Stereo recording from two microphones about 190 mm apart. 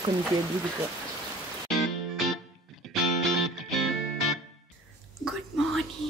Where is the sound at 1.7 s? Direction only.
Centre (ahead or behind).